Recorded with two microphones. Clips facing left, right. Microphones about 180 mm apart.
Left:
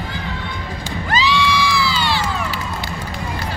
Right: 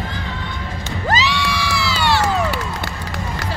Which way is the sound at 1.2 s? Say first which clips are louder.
Left 3 dB; 75° right (ahead or behind).